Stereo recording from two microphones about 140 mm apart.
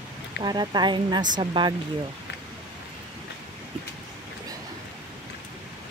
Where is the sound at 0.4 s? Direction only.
30° right (ahead or behind).